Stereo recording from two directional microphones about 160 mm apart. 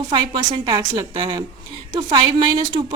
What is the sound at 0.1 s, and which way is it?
A woman's voice, 25° right (ahead or behind).